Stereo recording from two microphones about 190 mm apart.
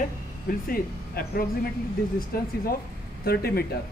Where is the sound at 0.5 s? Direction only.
50° left (ahead or behind).